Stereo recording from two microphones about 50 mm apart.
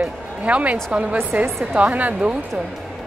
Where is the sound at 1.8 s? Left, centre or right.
Right.